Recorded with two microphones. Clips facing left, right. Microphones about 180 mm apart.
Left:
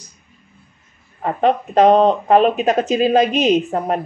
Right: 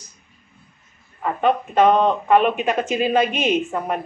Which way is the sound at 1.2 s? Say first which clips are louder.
Left 3 dB; 35° left (ahead or behind).